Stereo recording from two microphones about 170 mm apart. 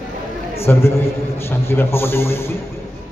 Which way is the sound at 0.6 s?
15° left (ahead or behind).